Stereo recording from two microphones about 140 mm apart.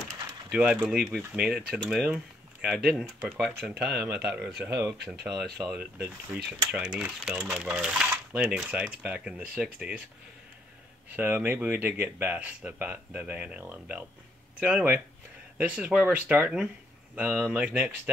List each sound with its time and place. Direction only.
0.5 s speech: 10° right (ahead or behind)
4.6 s speech: 20° right (ahead or behind)
5.0 s speech: centre (ahead or behind)
5.7 s speech: 15° right (ahead or behind)
11.1 s speech: 15° right (ahead or behind)